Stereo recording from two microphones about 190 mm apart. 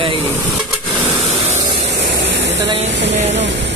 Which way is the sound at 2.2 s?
70° right (ahead or behind).